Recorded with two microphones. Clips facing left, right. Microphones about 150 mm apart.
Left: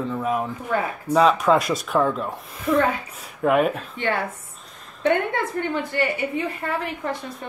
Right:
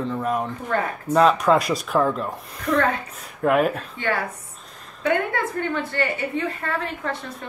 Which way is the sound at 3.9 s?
20° left (ahead or behind).